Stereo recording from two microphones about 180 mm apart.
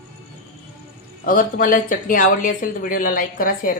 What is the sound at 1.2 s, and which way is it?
Speech, 50° left (ahead or behind).